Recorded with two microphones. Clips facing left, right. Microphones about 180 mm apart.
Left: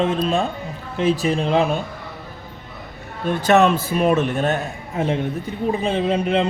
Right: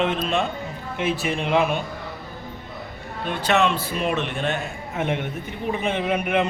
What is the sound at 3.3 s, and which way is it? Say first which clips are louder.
A man's voice: left 6 dB; 45° left (ahead or behind).